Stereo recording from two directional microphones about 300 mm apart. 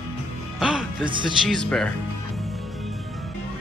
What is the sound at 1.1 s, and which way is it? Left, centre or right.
Music, centre.